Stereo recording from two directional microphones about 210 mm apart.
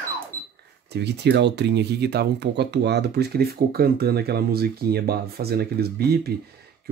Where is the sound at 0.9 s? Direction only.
50° right (ahead or behind).